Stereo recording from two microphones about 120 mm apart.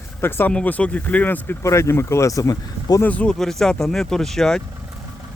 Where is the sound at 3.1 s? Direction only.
10° left (ahead or behind).